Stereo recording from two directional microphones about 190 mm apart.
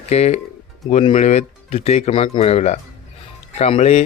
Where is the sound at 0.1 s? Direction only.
35° left (ahead or behind).